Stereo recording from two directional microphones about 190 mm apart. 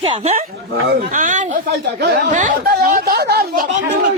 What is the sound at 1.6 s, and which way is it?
A woman's voice, 55° right (ahead or behind).